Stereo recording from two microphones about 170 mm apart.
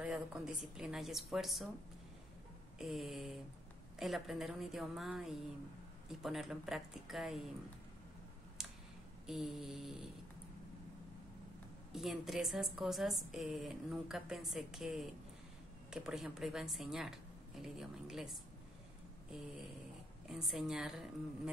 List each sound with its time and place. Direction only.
0.0 s speech: 5° right (ahead or behind)
2.8 s speech: centre (ahead or behind)
8.6 s a sound: 5° right (ahead or behind)
9.2 s speech: centre (ahead or behind)
11.9 s speech: centre (ahead or behind)
20.2 s speech: 5° right (ahead or behind)